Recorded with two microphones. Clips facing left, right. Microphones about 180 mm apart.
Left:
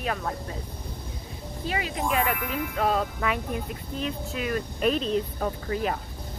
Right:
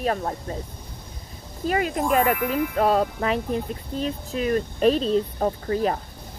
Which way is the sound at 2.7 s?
45° right (ahead or behind).